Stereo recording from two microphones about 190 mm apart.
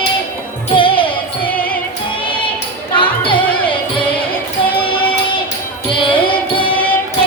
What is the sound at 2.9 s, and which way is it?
Music, 25° left (ahead or behind).